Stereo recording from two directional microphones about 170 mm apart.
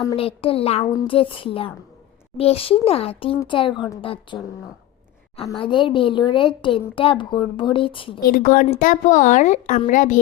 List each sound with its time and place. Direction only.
0.2 s a woman's voice: 35° left (ahead or behind)
5.5 s a woman's voice: 30° left (ahead or behind)
8.3 s a woman's voice: 55° left (ahead or behind)